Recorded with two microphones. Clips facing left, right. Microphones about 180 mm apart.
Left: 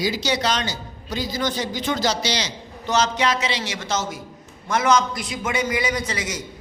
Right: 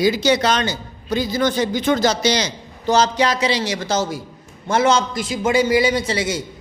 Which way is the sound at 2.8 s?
35° right (ahead or behind).